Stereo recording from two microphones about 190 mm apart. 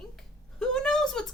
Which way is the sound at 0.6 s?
5° left (ahead or behind).